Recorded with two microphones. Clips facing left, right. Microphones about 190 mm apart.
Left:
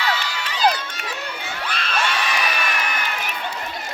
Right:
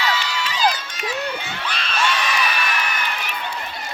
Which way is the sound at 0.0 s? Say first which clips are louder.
Right 1 dB; 55° left (ahead or behind).